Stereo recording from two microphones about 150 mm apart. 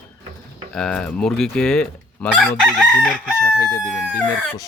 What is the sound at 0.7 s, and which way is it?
Fowl, 5° left (ahead or behind).